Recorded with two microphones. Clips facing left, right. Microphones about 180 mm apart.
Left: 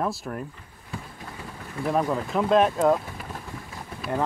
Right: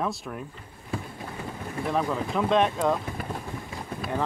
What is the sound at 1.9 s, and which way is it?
Speech, 5° left (ahead or behind).